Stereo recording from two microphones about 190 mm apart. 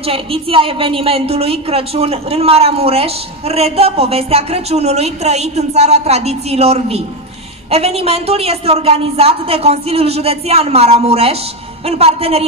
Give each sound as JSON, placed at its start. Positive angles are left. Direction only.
{"t": 0.0, "sound": "a woman's voice", "side_deg": -30}